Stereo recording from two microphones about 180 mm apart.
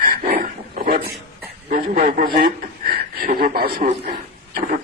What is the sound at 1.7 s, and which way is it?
A man's voice, 45° right (ahead or behind).